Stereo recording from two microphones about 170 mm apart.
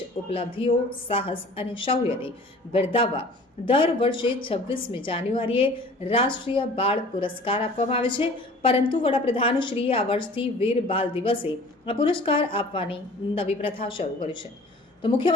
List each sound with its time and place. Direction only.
0.3 s a woman's voice: 30° left (ahead or behind)